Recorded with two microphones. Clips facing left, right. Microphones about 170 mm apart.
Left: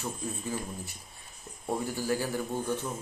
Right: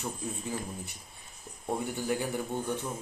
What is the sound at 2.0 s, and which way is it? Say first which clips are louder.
Speech: left 1 dB; 20° right (ahead or behind).